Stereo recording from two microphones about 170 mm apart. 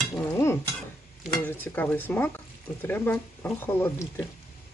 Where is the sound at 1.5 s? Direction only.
10° left (ahead or behind).